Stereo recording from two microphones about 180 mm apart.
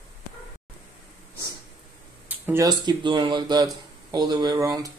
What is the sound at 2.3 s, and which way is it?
Speech, 10° right (ahead or behind).